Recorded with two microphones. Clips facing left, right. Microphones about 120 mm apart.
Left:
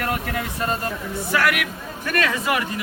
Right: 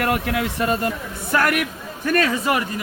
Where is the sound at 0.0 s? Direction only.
65° right (ahead or behind).